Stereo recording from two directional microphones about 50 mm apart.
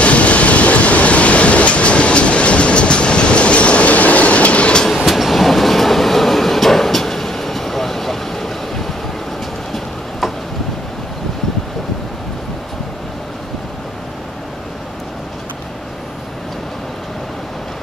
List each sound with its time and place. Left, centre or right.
0.0 s train: left
5.0 s train: centre